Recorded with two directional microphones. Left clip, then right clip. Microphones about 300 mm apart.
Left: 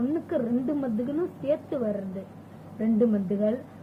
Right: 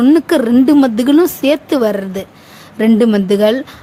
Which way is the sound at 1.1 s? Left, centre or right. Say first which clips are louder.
Right 15 dB; right.